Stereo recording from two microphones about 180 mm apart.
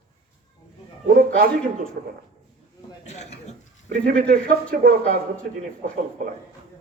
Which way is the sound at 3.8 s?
60° right (ahead or behind).